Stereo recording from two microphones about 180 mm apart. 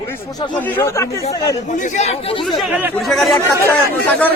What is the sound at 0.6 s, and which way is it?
Speech, 10° left (ahead or behind).